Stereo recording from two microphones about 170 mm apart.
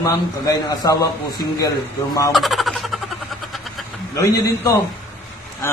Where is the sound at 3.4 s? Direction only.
Centre (ahead or behind).